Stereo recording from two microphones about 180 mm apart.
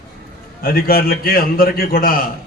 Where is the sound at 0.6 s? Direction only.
55° left (ahead or behind).